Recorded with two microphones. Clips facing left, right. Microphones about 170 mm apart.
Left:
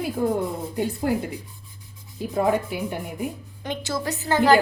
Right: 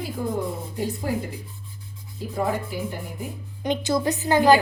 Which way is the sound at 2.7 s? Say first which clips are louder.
Left 1 dB; 65° left (ahead or behind).